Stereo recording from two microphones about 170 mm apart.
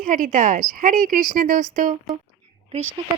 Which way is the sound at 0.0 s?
55° right (ahead or behind).